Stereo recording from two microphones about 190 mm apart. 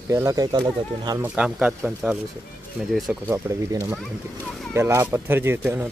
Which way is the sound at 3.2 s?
15° right (ahead or behind).